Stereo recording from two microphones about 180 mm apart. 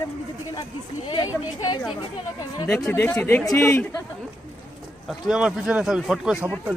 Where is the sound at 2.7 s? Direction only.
10° left (ahead or behind).